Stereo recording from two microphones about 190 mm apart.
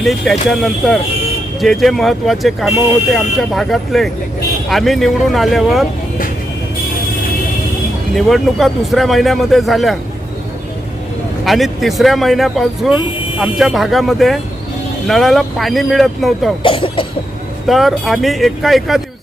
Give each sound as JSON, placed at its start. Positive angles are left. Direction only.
{"t": 0.0, "sound": "speech", "side_deg": 0}
{"t": 8.1, "sound": "speech", "side_deg": 0}
{"t": 11.4, "sound": "speech", "side_deg": 0}
{"t": 16.6, "sound": "cough", "side_deg": 25}
{"t": 17.7, "sound": "speech", "side_deg": 0}